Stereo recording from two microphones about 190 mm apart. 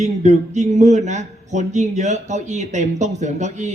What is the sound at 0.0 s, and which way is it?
Speech, 40° right (ahead or behind).